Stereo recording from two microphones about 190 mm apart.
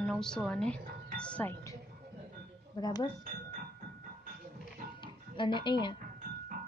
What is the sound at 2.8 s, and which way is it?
Speech, 20° left (ahead or behind).